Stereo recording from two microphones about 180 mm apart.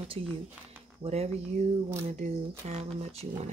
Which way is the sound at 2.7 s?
35° right (ahead or behind).